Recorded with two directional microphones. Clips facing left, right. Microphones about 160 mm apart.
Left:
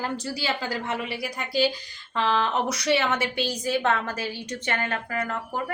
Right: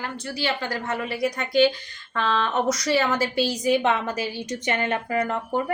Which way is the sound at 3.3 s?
10° right (ahead or behind).